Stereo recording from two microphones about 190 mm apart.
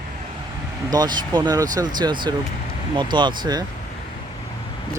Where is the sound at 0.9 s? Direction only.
20° right (ahead or behind).